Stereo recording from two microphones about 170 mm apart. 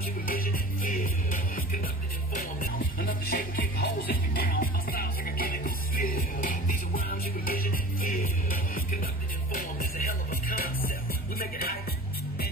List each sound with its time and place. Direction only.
0.0 s music: 60° left (ahead or behind)